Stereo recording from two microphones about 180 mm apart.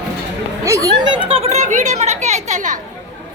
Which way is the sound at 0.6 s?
15° right (ahead or behind).